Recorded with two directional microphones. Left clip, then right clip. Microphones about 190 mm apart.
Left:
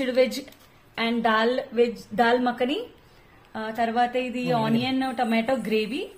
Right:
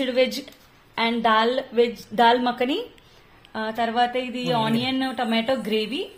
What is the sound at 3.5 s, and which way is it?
A woman's voice, 25° right (ahead or behind).